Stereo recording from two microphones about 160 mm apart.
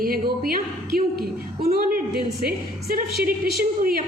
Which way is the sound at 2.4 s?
65° right (ahead or behind).